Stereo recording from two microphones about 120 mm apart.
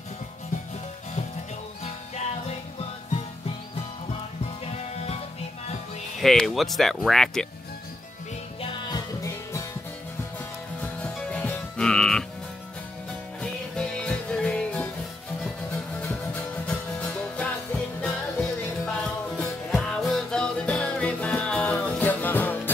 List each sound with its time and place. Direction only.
6.2 s speech: centre (ahead or behind)
8.9 s music: 25° left (ahead or behind)
11.3 s music: 15° left (ahead or behind)
13.4 s music: 5° left (ahead or behind)
16.6 s music: 10° left (ahead or behind)